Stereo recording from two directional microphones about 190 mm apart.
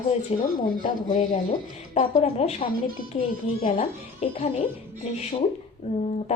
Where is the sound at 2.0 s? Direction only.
35° left (ahead or behind).